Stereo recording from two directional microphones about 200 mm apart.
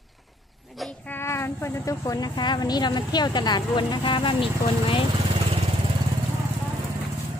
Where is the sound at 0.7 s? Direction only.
5° left (ahead or behind); by 5.0 s 25° left (ahead or behind).